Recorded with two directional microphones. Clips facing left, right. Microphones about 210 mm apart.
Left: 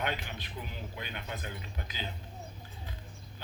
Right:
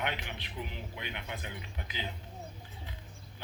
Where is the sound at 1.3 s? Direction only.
40° left (ahead or behind).